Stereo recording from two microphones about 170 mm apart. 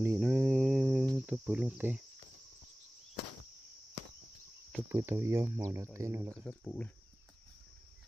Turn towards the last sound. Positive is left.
turn(degrees=5)  # may be behind; listen again after turning